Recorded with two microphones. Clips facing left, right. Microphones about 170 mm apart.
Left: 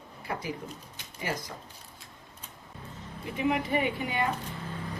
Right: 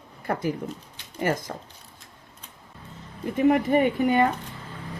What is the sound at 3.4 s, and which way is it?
Speech, 45° right (ahead or behind).